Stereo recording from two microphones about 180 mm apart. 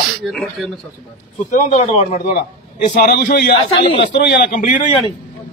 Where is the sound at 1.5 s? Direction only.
45° left (ahead or behind).